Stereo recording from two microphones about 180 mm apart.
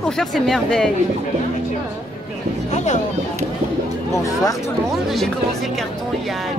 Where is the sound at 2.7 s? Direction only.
40° left (ahead or behind).